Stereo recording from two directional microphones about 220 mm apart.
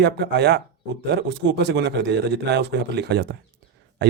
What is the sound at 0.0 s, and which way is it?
Speech, 50° right (ahead or behind).